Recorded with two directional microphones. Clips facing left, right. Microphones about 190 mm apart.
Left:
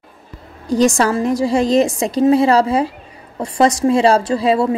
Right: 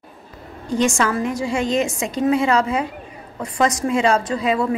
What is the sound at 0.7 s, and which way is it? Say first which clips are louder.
A woman's voice: left 5 dB; 35° left (ahead or behind).